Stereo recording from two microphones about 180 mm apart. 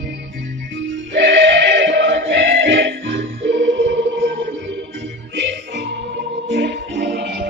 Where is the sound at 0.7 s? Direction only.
80° right.